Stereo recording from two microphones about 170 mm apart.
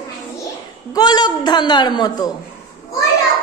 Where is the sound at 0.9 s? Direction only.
25° left (ahead or behind).